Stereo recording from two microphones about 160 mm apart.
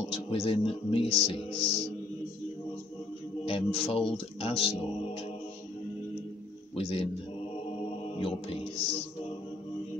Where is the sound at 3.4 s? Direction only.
35° left (ahead or behind).